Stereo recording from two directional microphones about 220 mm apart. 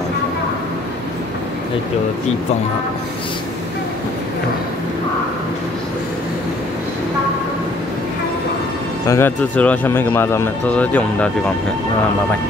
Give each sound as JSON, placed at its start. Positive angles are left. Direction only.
{"t": 9.0, "sound": "speech", "side_deg": 10}